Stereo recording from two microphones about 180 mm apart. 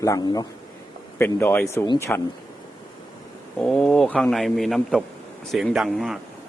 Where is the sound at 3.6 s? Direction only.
5° left (ahead or behind).